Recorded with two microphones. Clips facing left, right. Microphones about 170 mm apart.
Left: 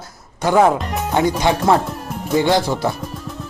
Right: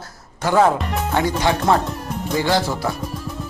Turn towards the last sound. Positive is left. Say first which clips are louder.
# right 1 dB
turn(degrees=0)  # may be behind; listen again after turning